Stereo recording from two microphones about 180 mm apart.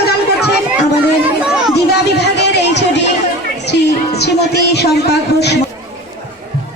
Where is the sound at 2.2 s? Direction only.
70° left (ahead or behind).